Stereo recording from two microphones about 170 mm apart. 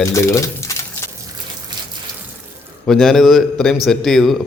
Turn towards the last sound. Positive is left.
turn(degrees=0)  # may be behind; listen again after turning